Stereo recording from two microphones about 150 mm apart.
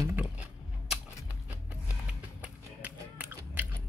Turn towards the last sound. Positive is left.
turn(degrees=-10)  # may be behind; listen again after turning